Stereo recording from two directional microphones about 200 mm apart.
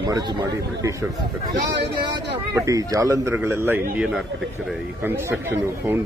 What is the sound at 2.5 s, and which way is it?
A man's voice, 15° right (ahead or behind).